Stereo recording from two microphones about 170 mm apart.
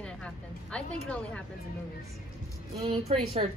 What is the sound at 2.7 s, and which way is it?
Speech, 35° right (ahead or behind).